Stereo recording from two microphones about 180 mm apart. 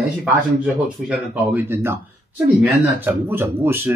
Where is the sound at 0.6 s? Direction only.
5° right (ahead or behind).